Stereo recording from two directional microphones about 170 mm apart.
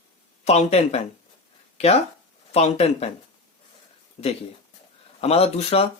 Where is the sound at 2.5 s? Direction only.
40° left (ahead or behind).